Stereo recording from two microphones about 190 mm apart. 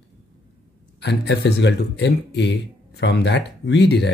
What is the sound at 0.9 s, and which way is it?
A man's voice, 60° left (ahead or behind).